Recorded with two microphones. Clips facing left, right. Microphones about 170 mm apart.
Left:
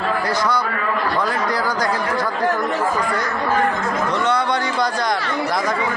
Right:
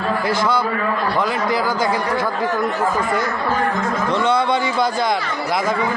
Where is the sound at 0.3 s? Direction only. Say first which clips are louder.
Right 3 dB; 25° right (ahead or behind).